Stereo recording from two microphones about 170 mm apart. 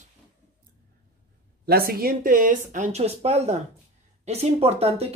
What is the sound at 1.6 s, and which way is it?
Speech, 65° right (ahead or behind).